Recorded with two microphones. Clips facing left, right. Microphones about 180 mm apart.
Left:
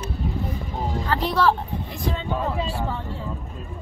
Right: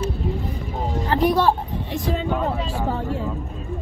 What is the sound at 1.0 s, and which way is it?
Speech, 20° right (ahead or behind).